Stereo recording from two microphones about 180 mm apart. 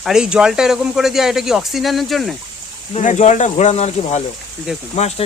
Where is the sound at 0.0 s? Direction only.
5° right (ahead or behind).